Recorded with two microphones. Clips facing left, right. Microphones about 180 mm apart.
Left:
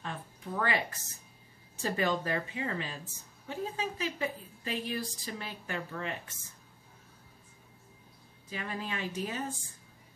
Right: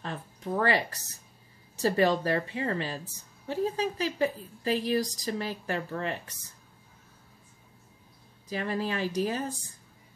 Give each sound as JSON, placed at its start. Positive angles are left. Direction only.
{"t": 0.0, "sound": "a sound", "side_deg": -40}
{"t": 1.8, "sound": "a woman's voice", "side_deg": -35}
{"t": 8.5, "sound": "a woman's voice", "side_deg": -35}